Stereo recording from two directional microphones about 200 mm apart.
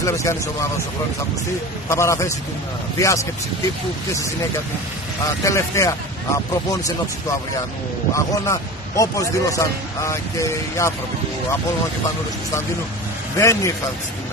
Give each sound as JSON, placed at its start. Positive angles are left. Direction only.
{"t": 0.0, "sound": "a man's voice", "side_deg": 15}
{"t": 1.9, "sound": "a man's voice", "side_deg": 15}
{"t": 5.2, "sound": "a man's voice", "side_deg": 15}
{"t": 8.1, "sound": "a man's voice", "side_deg": 15}
{"t": 13.4, "sound": "a man's voice", "side_deg": 15}